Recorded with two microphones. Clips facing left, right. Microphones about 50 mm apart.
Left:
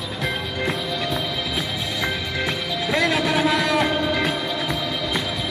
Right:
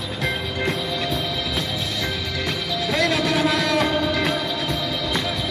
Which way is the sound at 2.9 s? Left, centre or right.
Centre.